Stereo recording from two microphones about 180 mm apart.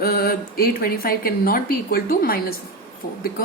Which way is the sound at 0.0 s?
60° left (ahead or behind).